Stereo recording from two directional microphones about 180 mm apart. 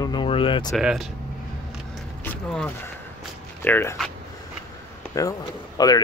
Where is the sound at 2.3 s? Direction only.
10° left (ahead or behind).